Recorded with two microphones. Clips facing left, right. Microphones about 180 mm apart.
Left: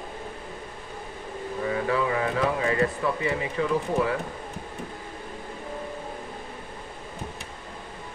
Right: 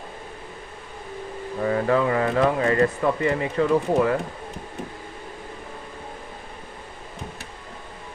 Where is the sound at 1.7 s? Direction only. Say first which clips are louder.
Right 5 dB; 45° right (ahead or behind).